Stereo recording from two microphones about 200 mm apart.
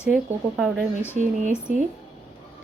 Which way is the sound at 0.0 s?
5° right (ahead or behind).